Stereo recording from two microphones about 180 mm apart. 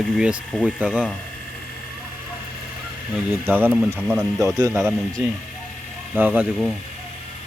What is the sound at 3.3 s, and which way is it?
Speech, 10° right (ahead or behind).